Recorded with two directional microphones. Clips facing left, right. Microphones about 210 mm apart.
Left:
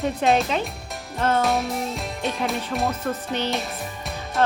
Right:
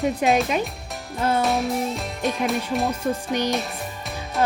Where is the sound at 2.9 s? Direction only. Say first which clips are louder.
Right 2 dB; 15° right (ahead or behind).